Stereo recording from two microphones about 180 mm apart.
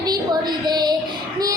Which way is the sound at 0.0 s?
20° right (ahead or behind).